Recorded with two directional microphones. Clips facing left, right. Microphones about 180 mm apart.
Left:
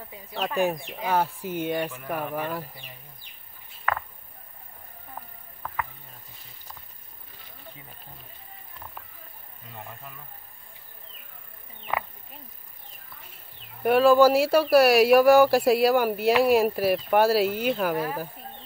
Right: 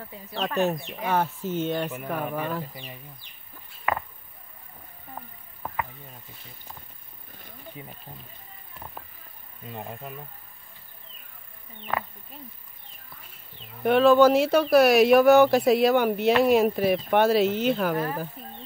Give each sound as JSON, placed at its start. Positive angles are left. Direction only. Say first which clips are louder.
{"t": 0.3, "sound": "speech", "louder": "even", "side_deg": 10}
{"t": 9.8, "sound": "speech", "louder": "right 5 dB", "side_deg": -25}
{"t": 13.8, "sound": "speech", "louder": "even", "side_deg": 5}